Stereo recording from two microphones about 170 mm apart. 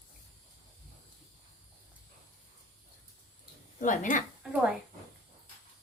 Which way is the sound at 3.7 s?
50° left (ahead or behind).